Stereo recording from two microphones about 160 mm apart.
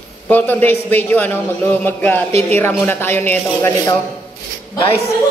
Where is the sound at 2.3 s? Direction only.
40° right (ahead or behind).